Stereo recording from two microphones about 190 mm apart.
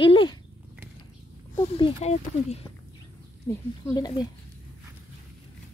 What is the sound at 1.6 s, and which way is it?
Speech, 30° left (ahead or behind).